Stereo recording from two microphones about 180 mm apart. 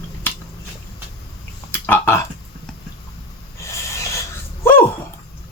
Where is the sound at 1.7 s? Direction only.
10° left (ahead or behind).